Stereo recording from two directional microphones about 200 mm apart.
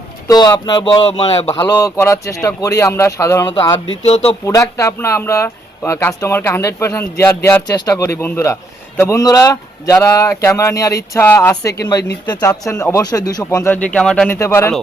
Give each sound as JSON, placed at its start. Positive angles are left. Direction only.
{"t": 0.3, "sound": "speech", "side_deg": 20}
{"t": 1.8, "sound": "speech", "side_deg": 15}
{"t": 4.0, "sound": "speech", "side_deg": 30}
{"t": 4.4, "sound": "speech", "side_deg": 15}
{"t": 14.3, "sound": "speech", "side_deg": 15}